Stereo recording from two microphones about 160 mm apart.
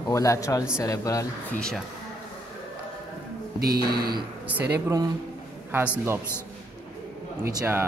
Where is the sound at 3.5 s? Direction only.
75° right (ahead or behind).